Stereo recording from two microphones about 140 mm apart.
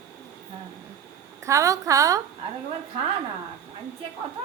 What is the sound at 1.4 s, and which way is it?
Speech, 25° right (ahead or behind).